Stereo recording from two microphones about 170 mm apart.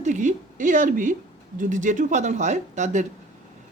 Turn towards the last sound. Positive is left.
turn(degrees=-45)  # may be behind; listen again after turning